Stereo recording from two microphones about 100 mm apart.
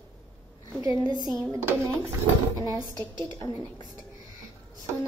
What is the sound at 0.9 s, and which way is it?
Speech, 45° right (ahead or behind).